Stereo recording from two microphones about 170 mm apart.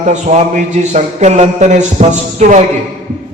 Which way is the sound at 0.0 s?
45° right (ahead or behind).